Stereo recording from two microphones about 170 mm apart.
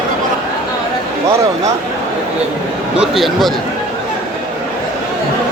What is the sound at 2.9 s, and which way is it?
Speech, centre (ahead or behind).